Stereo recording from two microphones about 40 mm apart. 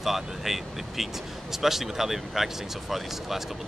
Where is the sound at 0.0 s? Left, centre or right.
Centre.